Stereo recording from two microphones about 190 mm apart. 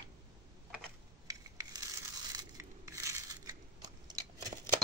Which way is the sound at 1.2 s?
20° right (ahead or behind).